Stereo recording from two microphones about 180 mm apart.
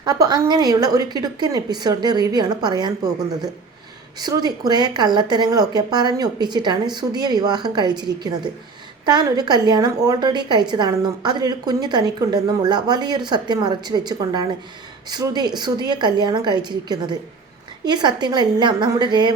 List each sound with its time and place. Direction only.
0.0 s a woman's voice: 20° right (ahead or behind)